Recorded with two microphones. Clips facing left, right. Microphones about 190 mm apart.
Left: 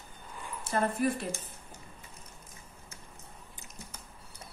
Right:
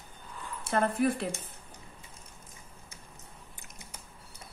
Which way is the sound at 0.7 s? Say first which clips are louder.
Right 2 dB; 60° right (ahead or behind).